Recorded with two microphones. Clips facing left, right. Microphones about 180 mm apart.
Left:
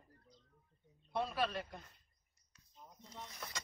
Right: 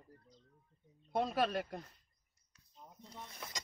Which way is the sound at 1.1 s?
45° right (ahead or behind).